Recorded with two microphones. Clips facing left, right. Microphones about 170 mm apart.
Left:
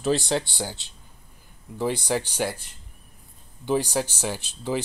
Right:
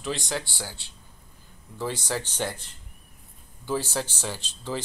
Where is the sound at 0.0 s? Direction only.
35° left (ahead or behind).